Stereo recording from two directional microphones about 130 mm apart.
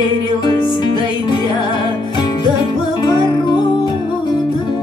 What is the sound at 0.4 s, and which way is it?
Music, 35° left (ahead or behind).